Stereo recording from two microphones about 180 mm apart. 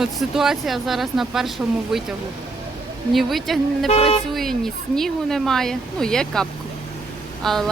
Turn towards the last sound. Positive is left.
turn(degrees=0)  # may be behind; listen again after turning